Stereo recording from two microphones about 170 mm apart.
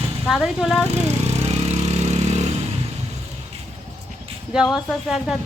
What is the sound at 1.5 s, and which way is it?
Vehicle, 40° right (ahead or behind).